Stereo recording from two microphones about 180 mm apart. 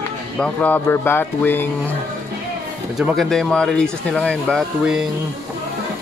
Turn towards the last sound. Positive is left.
turn(degrees=-5)  # may be behind; listen again after turning